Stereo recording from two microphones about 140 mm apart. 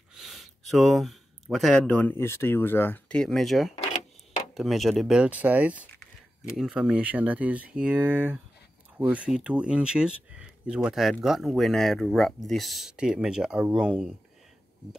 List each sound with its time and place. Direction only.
0.1 s speech: centre (ahead or behind)
3.7 s a sound: 55° left (ahead or behind)
4.6 s speech: centre (ahead or behind)